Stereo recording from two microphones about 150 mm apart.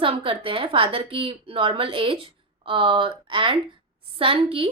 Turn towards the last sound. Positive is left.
turn(degrees=-35)  # may be behind; listen again after turning